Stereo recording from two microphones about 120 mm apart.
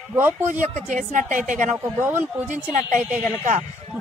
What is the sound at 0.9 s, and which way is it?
Speech, 85° right.